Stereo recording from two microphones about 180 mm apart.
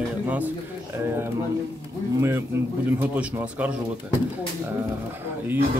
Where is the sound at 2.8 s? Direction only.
10° right (ahead or behind).